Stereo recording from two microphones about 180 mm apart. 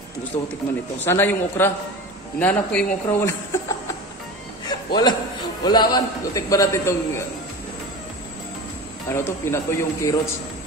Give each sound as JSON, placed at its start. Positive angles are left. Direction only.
{"t": 1.0, "sound": "a man's voice", "side_deg": 10}
{"t": 4.6, "sound": "a sound", "side_deg": 25}
{"t": 5.7, "sound": "a man's voice", "side_deg": 25}
{"t": 9.1, "sound": "a man's voice", "side_deg": 15}